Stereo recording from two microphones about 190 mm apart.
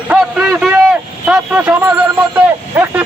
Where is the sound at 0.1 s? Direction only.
5° right (ahead or behind).